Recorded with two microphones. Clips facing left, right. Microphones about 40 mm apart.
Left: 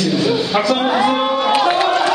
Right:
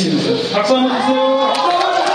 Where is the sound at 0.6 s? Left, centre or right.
Centre.